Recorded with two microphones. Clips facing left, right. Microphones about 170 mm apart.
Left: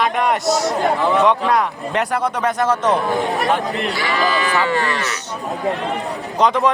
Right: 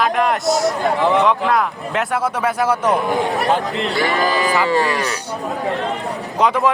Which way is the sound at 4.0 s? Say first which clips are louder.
Right 3 dB; 45° right (ahead or behind).